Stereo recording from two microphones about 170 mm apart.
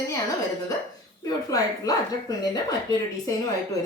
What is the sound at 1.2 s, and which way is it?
A woman's voice, 20° left (ahead or behind).